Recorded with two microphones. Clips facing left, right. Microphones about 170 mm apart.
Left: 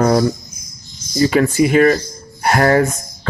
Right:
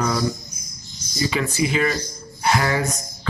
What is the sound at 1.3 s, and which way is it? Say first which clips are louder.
Speech: left 9 dB; 55° left (ahead or behind).